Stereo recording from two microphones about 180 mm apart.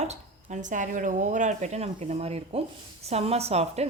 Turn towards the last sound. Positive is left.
turn(degrees=-35)  # may be behind; listen again after turning